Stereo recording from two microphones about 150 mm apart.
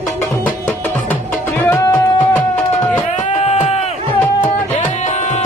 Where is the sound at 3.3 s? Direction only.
45° left (ahead or behind).